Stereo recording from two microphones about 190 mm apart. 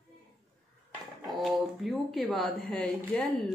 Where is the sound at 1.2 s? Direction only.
Centre (ahead or behind).